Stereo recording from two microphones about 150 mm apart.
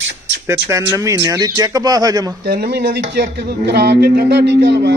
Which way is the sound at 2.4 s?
90° right.